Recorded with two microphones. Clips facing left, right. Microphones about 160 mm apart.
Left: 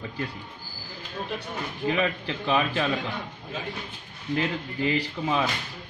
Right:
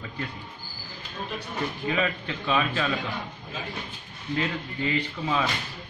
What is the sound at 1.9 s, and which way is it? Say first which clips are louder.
A man's voice: left 4 dB; 30° left (ahead or behind).